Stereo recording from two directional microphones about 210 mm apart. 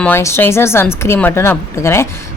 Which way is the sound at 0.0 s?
10° left (ahead or behind).